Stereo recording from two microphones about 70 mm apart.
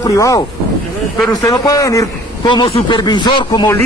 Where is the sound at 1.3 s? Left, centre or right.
Left.